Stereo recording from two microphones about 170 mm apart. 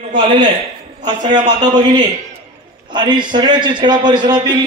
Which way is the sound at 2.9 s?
25° right (ahead or behind).